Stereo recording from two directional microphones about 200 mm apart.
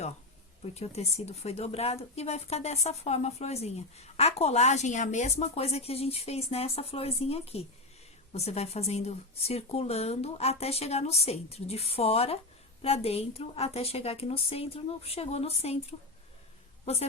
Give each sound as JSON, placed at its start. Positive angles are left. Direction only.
{"t": 0.6, "sound": "a woman's voice", "side_deg": 30}